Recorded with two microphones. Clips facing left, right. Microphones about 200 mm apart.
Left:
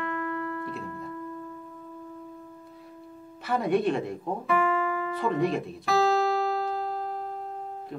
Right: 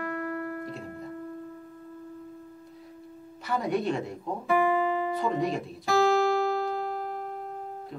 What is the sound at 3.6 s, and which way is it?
Speech, centre (ahead or behind).